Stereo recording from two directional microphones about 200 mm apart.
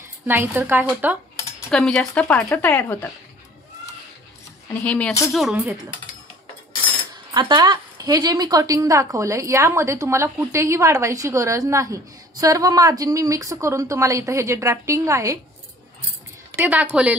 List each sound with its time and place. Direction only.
0.3 s a woman's voice: 10° right (ahead or behind)
1.7 s speech: 5° left (ahead or behind)
4.8 s speech: 5° left (ahead or behind)
5.3 s a woman's voice: 5° right (ahead or behind)
7.3 s a woman's voice: 20° right (ahead or behind)
16.5 s a woman's voice: 10° right (ahead or behind)